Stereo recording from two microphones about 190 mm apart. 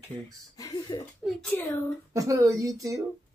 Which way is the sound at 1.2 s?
5° left (ahead or behind).